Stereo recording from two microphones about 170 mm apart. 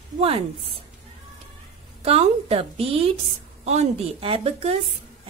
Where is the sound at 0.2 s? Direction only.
35° right (ahead or behind).